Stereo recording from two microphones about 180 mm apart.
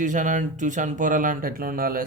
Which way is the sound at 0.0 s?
45° right (ahead or behind).